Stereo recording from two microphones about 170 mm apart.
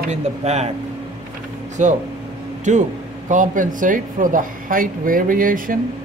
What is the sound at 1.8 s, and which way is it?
Speech, 45° right (ahead or behind).